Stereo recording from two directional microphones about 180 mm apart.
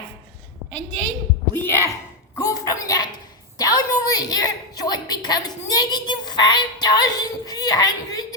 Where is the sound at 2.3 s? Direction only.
20° left (ahead or behind).